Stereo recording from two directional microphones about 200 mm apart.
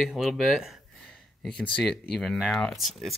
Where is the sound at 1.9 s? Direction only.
50° left (ahead or behind).